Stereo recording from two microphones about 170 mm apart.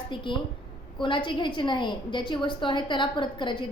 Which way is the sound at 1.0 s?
30° left (ahead or behind).